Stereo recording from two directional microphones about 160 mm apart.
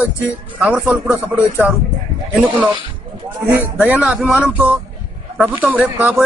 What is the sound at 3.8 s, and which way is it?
A man's voice, 10° right (ahead or behind).